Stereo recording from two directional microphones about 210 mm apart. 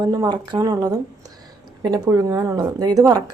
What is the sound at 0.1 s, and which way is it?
A woman's voice, 20° right (ahead or behind).